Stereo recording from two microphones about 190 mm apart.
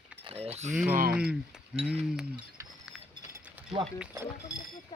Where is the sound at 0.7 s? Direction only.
10° right (ahead or behind).